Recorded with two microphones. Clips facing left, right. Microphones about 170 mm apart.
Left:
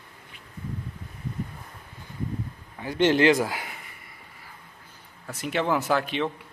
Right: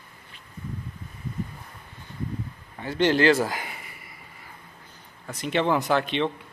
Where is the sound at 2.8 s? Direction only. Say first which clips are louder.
Left 1 dB; 15° left (ahead or behind).